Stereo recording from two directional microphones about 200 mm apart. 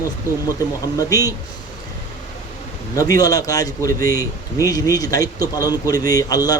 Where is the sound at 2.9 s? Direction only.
15° left (ahead or behind).